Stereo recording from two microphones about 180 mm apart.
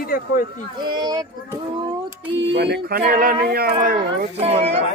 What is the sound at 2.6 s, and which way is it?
Speech, 65° right (ahead or behind).